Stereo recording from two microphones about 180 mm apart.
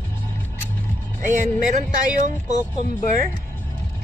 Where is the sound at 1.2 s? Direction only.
45° right (ahead or behind).